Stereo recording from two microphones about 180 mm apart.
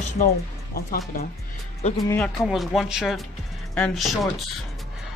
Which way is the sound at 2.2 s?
Centre (ahead or behind).